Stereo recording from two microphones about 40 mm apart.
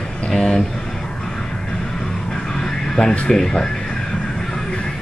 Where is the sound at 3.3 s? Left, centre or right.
Centre.